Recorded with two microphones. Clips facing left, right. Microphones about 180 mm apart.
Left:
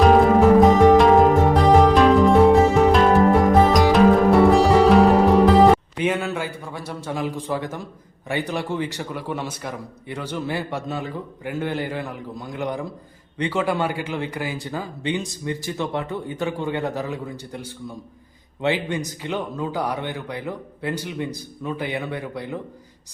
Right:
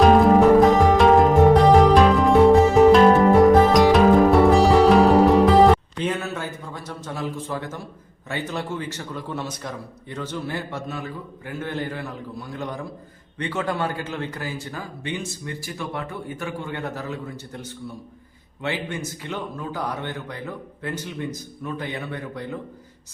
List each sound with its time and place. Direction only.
0.0 s music: centre (ahead or behind)
6.0 s a man's voice: 10° left (ahead or behind)